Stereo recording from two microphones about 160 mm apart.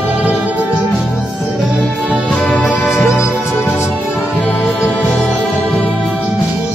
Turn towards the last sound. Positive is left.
turn(degrees=5)  # may be behind; listen again after turning